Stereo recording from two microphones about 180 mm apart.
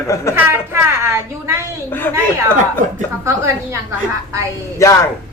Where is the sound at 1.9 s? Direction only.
10° left (ahead or behind).